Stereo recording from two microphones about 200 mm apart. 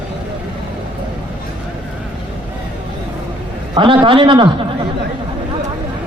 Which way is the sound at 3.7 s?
25° right (ahead or behind).